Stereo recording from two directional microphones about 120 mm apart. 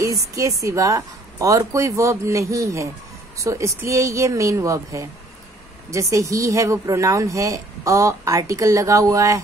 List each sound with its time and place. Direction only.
0.0 s speech: 30° right (ahead or behind)